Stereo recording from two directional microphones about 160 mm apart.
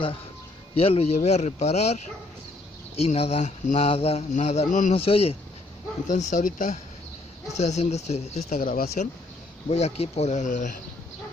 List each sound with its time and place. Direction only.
0.7 s speech: 40° left (ahead or behind)
4.9 s speech: 40° left (ahead or behind)
6.0 s speech: 50° left (ahead or behind)
9.7 s speech: 40° left (ahead or behind)